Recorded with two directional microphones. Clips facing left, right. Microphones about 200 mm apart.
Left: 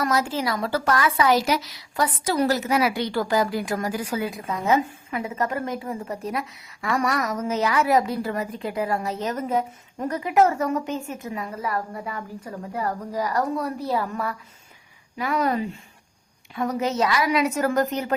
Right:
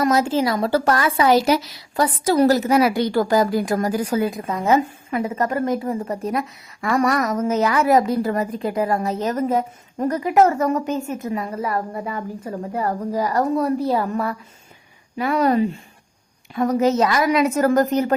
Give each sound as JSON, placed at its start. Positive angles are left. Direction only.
{"t": 0.0, "sound": "a woman's voice", "side_deg": -25}
{"t": 11.7, "sound": "a woman's voice", "side_deg": -30}
{"t": 15.2, "sound": "a woman's voice", "side_deg": -30}